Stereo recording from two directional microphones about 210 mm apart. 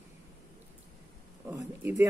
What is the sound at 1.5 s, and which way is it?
Speech, 10° right (ahead or behind).